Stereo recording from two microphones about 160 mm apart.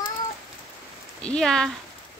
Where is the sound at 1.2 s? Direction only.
5° left (ahead or behind).